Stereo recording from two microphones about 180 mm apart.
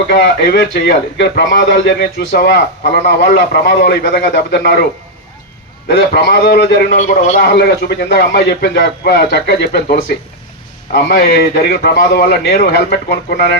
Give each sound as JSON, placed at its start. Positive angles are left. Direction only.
{"t": 0.1, "sound": "a man's voice", "side_deg": 70}
{"t": 5.9, "sound": "a man's voice", "side_deg": 70}
{"t": 6.9, "sound": "a man's voice", "side_deg": 45}
{"t": 7.4, "sound": "a man's voice", "side_deg": 65}